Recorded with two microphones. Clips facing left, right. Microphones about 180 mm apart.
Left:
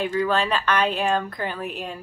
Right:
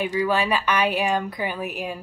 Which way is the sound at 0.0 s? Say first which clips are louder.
Even; 10° right (ahead or behind).